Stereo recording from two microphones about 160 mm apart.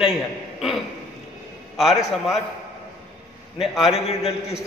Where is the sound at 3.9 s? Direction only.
40° left (ahead or behind).